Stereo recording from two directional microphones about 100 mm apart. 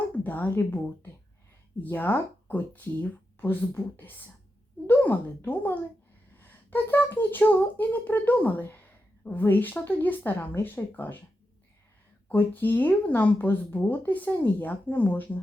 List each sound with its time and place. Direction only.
0.2 s a woman's voice: 15° left (ahead or behind)
12.3 s speech: 20° left (ahead or behind)